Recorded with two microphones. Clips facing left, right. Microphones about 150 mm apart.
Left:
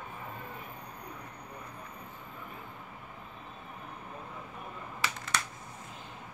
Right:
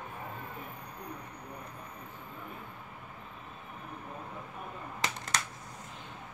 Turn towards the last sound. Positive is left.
turn(degrees=-40)  # may be behind; listen again after turning